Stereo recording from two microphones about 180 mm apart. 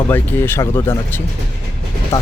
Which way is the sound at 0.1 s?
10° left (ahead or behind).